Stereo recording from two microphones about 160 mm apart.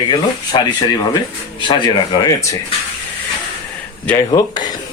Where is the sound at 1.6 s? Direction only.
30° left (ahead or behind).